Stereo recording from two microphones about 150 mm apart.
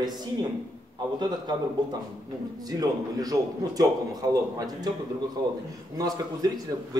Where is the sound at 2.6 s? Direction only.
25° right (ahead or behind).